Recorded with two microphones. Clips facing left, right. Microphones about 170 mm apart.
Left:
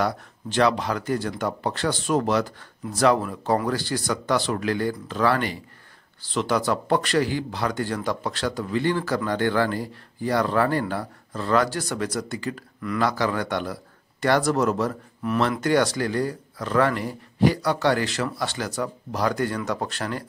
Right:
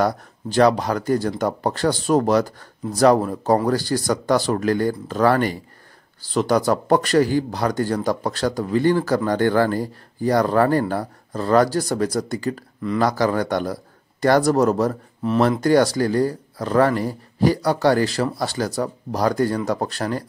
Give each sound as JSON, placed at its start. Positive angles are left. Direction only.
{"t": 0.0, "sound": "speech", "side_deg": -40}